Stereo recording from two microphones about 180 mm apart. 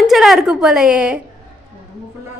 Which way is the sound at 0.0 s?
Centre (ahead or behind).